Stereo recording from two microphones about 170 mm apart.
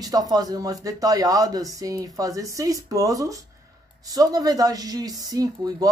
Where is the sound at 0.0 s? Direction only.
20° right (ahead or behind).